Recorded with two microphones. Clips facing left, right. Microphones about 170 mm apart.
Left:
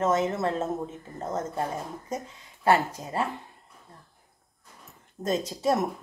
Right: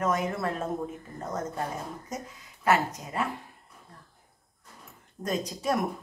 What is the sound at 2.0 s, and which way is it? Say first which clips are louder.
Speech: left 4 dB; 30° left (ahead or behind).